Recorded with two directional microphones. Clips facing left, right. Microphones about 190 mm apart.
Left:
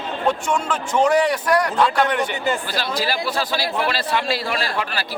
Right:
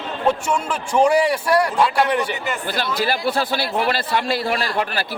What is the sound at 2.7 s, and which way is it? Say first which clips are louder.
Speech: right 1 dB; 55° right (ahead or behind).